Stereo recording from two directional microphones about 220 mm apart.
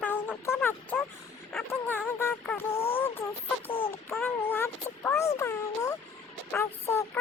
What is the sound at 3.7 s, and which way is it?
Child singing, 25° left (ahead or behind).